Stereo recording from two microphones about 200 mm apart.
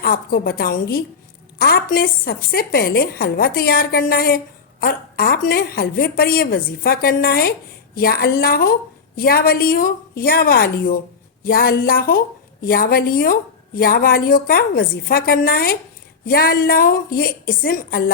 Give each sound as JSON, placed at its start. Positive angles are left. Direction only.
{"t": 0.0, "sound": "a woman's voice", "side_deg": 50}